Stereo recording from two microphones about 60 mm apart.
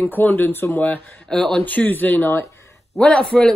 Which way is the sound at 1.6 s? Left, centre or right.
Left.